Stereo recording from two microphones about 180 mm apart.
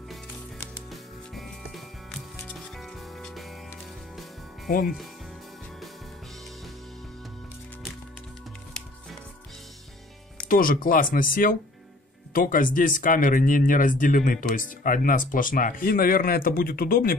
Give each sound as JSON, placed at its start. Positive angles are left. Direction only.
{"t": 4.6, "sound": "speech", "side_deg": 55}
{"t": 10.5, "sound": "speech", "side_deg": 50}